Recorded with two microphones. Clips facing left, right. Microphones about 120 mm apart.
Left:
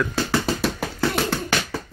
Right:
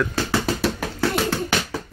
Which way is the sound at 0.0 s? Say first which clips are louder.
Even; centre (ahead or behind).